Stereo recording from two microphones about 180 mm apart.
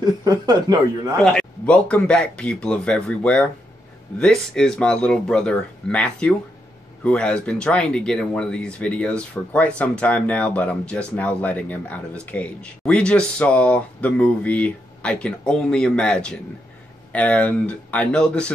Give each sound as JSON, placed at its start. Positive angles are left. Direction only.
{"t": 0.0, "sound": "speech", "side_deg": -20}
{"t": 1.2, "sound": "speech", "side_deg": 5}